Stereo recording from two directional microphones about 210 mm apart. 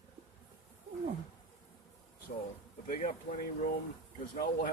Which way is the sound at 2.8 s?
40° left (ahead or behind).